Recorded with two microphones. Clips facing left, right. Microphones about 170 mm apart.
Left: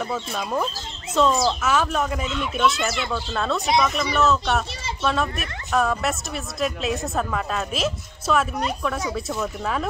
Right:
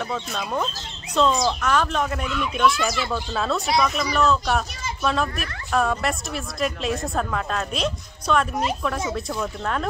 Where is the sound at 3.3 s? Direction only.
Centre (ahead or behind).